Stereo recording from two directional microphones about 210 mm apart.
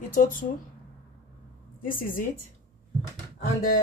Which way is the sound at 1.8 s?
40° left (ahead or behind).